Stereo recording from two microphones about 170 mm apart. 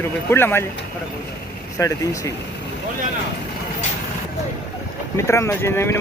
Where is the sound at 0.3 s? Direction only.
15° left (ahead or behind).